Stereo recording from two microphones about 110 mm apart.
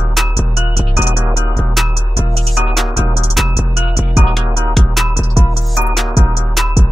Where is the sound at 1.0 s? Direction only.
15° right (ahead or behind).